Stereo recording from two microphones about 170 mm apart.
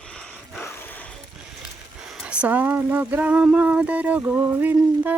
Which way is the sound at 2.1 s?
5° right (ahead or behind).